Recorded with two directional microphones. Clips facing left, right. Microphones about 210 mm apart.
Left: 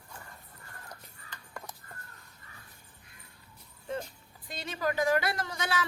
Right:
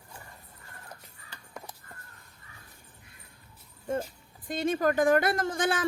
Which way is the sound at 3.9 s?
45° right (ahead or behind).